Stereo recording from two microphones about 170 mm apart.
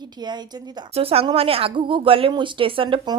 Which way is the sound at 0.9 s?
35° right (ahead or behind).